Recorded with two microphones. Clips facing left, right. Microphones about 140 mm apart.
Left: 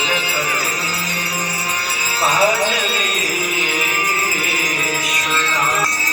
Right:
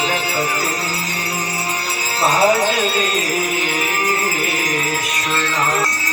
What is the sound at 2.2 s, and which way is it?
Music, 50° right (ahead or behind).